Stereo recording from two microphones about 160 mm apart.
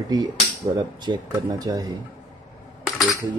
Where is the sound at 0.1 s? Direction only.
25° right (ahead or behind).